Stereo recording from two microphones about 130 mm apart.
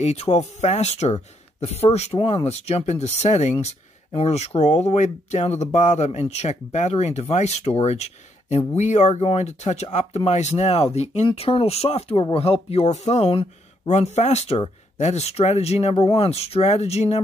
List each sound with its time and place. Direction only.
0.0 s speech: 55° left (ahead or behind)
3.5 s speech: 50° left (ahead or behind)
13.8 s speech: 60° left (ahead or behind)